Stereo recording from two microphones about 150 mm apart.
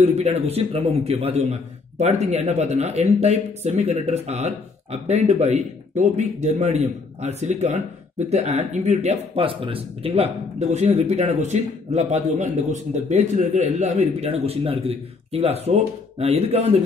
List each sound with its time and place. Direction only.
0.0 s speech: 45° right (ahead or behind)